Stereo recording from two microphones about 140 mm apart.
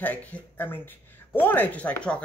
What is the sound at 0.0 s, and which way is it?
Speech, 10° left (ahead or behind).